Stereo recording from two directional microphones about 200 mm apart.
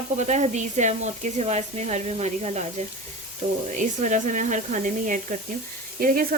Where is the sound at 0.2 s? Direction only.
35° right (ahead or behind).